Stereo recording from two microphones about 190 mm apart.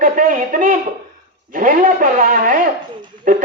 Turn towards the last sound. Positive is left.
turn(degrees=-45)  # may be behind; listen again after turning